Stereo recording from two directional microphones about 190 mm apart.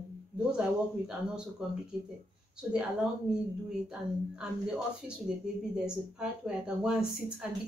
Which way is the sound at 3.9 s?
5° right (ahead or behind).